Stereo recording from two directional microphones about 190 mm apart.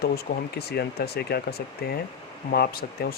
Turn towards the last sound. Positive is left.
turn(degrees=55)  # may be behind; listen again after turning